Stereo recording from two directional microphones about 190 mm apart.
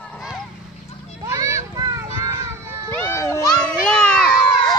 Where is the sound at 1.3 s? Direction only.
20° right (ahead or behind).